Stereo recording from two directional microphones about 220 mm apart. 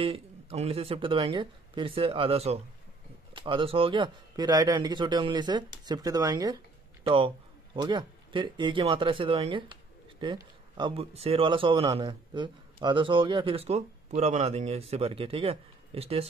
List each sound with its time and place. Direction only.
0.0 s speech: 25° right (ahead or behind)